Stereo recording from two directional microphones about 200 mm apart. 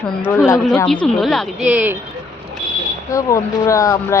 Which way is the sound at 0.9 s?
Centre (ahead or behind).